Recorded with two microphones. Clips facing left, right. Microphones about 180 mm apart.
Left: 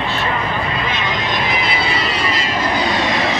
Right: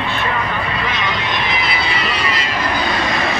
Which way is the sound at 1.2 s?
40° left (ahead or behind).